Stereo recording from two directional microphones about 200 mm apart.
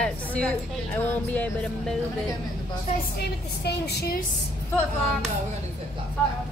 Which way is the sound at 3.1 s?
55° left (ahead or behind).